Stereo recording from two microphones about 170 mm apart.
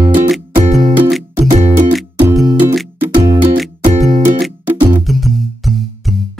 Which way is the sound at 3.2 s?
20° right (ahead or behind).